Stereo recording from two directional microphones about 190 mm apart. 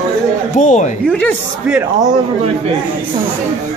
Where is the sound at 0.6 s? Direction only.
40° left (ahead or behind).